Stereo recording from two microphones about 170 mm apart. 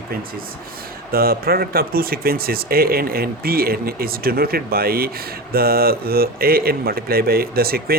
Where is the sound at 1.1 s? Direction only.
60° right (ahead or behind).